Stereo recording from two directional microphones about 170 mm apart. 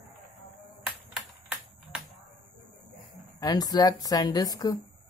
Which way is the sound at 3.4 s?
25° left (ahead or behind).